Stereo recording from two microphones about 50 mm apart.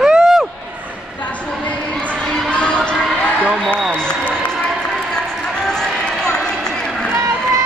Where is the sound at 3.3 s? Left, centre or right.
Right.